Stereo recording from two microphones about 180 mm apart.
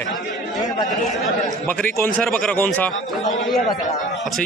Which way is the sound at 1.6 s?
10° left (ahead or behind).